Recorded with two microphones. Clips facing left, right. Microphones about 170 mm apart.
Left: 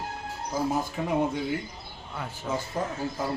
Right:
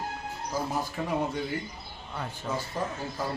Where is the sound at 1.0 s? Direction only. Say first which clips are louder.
Left 2 dB; 10° left (ahead or behind).